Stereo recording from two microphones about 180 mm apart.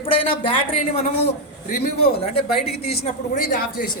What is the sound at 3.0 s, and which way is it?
Speech, 50° left (ahead or behind).